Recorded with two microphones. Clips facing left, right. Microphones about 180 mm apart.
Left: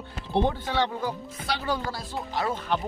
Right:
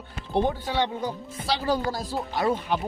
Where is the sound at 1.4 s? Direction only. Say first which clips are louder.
Right 4 dB; 35° right (ahead or behind).